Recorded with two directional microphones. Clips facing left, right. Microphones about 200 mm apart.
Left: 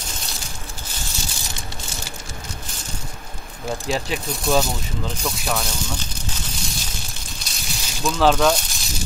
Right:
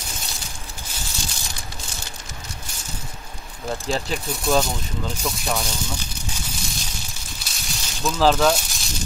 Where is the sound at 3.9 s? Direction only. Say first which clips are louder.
Left 1 dB; 5° left (ahead or behind).